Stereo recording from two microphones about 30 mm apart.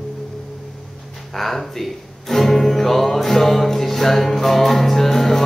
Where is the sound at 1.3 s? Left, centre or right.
Centre.